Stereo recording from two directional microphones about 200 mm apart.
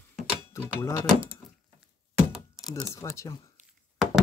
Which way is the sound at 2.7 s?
15° left (ahead or behind).